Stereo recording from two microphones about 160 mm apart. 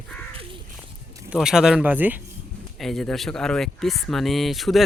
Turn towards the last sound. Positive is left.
turn(degrees=0)  # may be behind; listen again after turning